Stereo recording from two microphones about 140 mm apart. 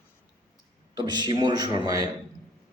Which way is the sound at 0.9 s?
30° right (ahead or behind).